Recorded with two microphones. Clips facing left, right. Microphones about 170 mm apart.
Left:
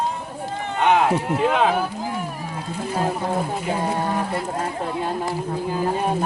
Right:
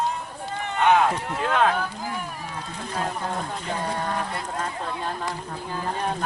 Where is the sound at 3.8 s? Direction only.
25° left (ahead or behind).